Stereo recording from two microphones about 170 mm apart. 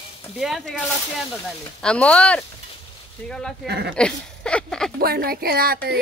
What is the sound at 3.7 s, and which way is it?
Speech, 75° right (ahead or behind).